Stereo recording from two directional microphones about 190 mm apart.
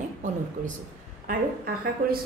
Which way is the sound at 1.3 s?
45° right (ahead or behind).